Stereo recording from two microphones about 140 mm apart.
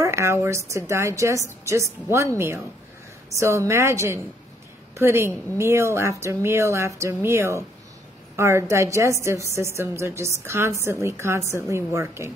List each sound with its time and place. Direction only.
0.0 s a woman's voice: 20° right (ahead or behind)